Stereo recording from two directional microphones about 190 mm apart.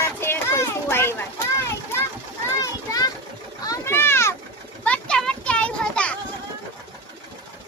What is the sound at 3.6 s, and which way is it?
Boat, 15° left (ahead or behind).